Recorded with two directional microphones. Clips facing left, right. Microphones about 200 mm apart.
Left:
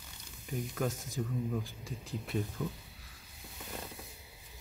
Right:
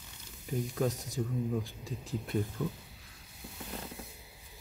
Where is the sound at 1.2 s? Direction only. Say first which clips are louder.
Right 2 dB; 15° right (ahead or behind).